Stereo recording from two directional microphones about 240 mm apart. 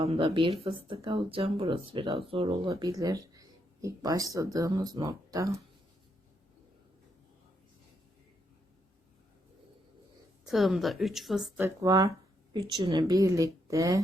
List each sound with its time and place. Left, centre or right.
0.0 s speech: right
10.4 s speech: centre